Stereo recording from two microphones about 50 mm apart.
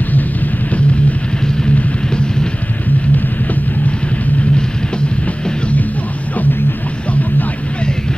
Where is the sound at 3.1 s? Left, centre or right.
Left.